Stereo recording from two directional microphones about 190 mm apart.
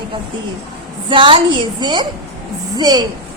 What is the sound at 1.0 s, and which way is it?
A woman's voice, 25° right (ahead or behind).